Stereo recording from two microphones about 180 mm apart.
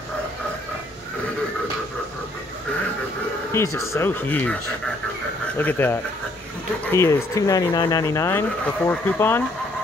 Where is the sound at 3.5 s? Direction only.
15° left (ahead or behind).